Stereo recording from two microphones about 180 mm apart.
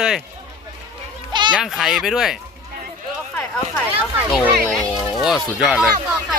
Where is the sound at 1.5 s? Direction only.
Centre (ahead or behind).